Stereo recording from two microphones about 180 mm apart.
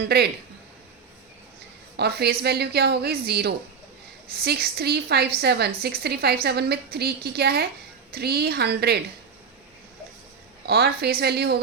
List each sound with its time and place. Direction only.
0.0 s a woman's voice: 60° right (ahead or behind)
2.0 s a woman's voice: 65° right (ahead or behind)
10.7 s a woman's voice: 60° right (ahead or behind)